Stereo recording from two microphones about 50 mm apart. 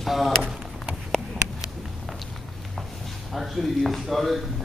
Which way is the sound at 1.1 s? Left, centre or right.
Centre.